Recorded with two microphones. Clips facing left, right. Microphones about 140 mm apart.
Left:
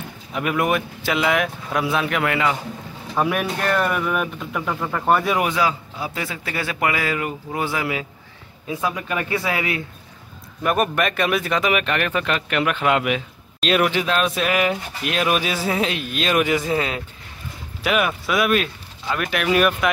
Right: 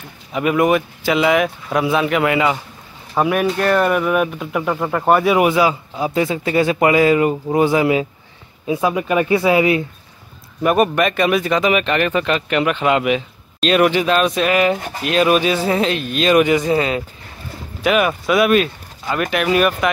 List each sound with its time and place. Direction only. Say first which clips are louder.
0.3 s a man's voice: right 6 dB; centre (ahead or behind); by 9.8 s 20° right (ahead or behind)
10.6 s speech: right 5 dB; centre (ahead or behind)
14.8 s speech: right 5 dB; 45° right (ahead or behind)
15.0 s speech: right 7 dB; 5° left (ahead or behind)